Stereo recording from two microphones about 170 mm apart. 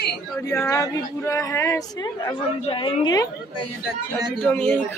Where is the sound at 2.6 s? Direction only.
30° left (ahead or behind).